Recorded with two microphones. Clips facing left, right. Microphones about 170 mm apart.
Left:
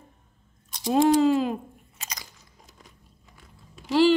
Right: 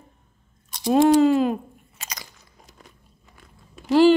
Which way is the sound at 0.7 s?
65° right (ahead or behind).